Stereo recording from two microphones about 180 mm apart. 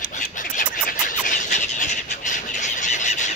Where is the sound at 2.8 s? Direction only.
40° left (ahead or behind).